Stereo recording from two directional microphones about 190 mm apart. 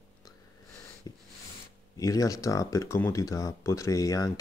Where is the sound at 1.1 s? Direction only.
20° left (ahead or behind).